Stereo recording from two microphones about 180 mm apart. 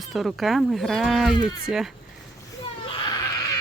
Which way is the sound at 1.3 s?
25° left (ahead or behind).